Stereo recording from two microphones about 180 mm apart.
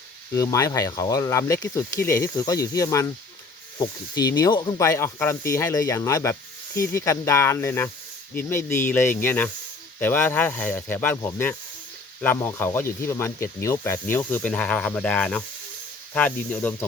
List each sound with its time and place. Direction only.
0.3 s speech: 20° left (ahead or behind)